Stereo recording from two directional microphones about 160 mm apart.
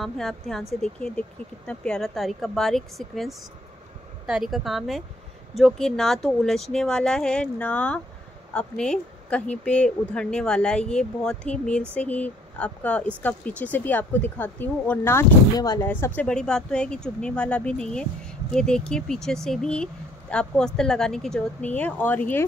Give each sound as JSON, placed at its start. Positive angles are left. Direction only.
{"t": 0.0, "sound": "speech", "side_deg": 0}
{"t": 16.2, "sound": "speech", "side_deg": 5}